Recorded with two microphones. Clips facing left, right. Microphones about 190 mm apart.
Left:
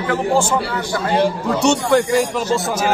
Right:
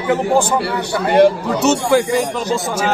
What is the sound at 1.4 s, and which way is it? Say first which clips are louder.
Speech: right 1 dB; centre (ahead or behind).